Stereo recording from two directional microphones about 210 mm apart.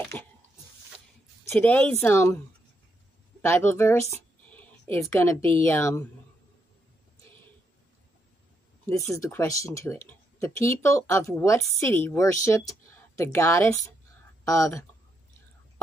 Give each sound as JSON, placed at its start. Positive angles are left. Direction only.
{"t": 0.1, "sound": "a sound", "side_deg": 5}
{"t": 1.5, "sound": "speech", "side_deg": 5}
{"t": 3.4, "sound": "speech", "side_deg": 10}
{"t": 8.8, "sound": "speech", "side_deg": 15}